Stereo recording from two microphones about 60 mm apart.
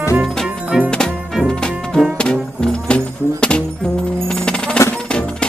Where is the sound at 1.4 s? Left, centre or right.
Centre.